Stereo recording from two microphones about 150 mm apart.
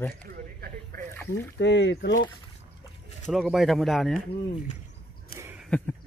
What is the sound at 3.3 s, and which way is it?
Speech, centre (ahead or behind).